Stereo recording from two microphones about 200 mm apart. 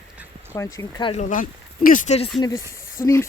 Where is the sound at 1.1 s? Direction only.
40° left (ahead or behind).